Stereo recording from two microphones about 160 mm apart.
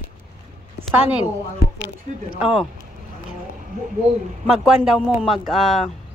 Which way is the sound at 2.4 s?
5° right (ahead or behind).